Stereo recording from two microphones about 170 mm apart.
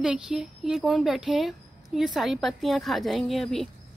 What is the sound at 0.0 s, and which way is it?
A woman's voice, 5° right (ahead or behind).